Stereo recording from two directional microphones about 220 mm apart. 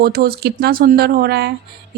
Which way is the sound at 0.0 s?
45° right (ahead or behind).